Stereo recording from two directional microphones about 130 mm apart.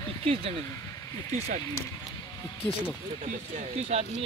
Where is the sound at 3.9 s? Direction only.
55° right (ahead or behind).